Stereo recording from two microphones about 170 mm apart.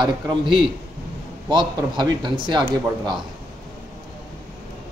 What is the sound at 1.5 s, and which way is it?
A man's voice, 25° right (ahead or behind).